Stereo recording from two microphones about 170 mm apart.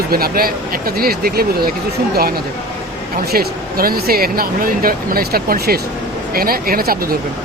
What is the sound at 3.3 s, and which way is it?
Speech, 65° right (ahead or behind).